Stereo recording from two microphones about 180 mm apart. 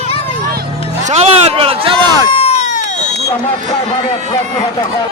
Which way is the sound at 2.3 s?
30° left (ahead or behind).